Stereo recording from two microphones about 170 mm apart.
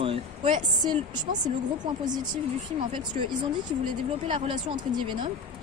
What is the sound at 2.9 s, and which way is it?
Speech, 30° right (ahead or behind).